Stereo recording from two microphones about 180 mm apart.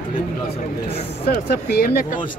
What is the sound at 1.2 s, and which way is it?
Speech, 60° left (ahead or behind).